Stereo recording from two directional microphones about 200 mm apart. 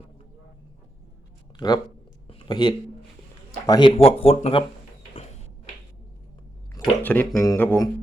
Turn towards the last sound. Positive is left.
turn(degrees=15)  # may be behind; listen again after turning